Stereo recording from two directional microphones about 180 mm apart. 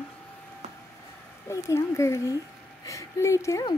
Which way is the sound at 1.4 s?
15° left (ahead or behind).